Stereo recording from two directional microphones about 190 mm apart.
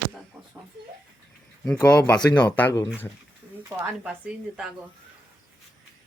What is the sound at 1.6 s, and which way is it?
Speech, 5° left (ahead or behind).